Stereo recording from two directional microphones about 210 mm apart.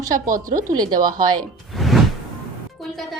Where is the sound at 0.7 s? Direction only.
20° right (ahead or behind).